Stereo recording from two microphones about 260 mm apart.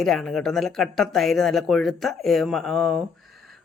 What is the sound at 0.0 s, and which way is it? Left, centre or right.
Speech, centre.